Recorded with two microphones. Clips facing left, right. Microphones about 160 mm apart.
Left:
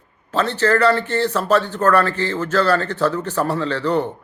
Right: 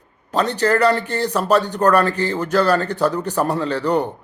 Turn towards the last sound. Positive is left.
turn(degrees=-15)  # may be behind; listen again after turning